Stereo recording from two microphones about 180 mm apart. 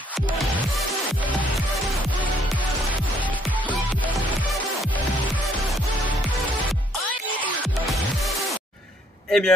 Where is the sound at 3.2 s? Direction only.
10° left (ahead or behind).